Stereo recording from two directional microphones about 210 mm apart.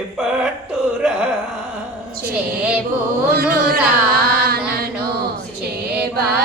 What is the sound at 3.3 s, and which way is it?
Carnatic music, 45° right (ahead or behind).